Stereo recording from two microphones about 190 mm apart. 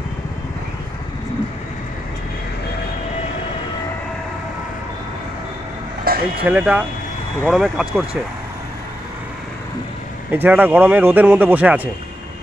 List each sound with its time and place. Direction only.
6.1 s a sound: 50° right (ahead or behind)
6.5 s speech: 5° right (ahead or behind)
10.3 s speech: 10° right (ahead or behind)